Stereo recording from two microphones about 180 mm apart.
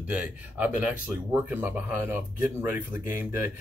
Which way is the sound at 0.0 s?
5° right (ahead or behind).